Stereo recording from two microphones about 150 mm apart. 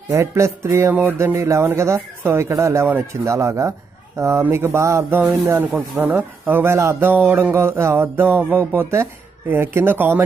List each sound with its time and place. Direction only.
0.1 s speech: 20° right (ahead or behind)